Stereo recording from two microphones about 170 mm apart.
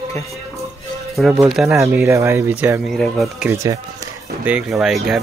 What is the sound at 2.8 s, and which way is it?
Speech, centre (ahead or behind).